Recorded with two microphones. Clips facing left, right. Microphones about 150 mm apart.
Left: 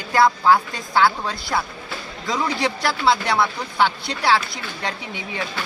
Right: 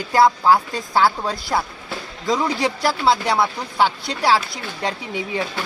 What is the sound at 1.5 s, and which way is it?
Speech, 25° right (ahead or behind).